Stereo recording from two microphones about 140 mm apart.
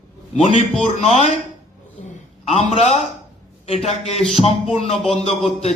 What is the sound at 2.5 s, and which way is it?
A man's voice, 55° left (ahead or behind).